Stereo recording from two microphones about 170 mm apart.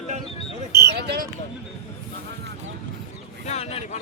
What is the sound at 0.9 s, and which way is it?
Speech, 70° right (ahead or behind).